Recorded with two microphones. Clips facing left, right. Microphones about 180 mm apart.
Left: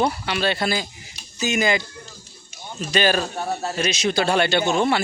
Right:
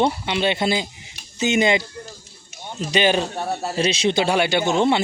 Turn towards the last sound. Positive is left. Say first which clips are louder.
# right 1 dB
turn(degrees=-20)  # may be behind; listen again after turning